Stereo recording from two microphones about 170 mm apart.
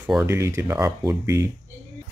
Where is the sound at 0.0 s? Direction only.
10° right (ahead or behind).